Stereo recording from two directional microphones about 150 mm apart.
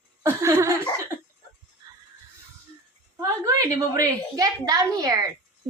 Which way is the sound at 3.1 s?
20° right (ahead or behind).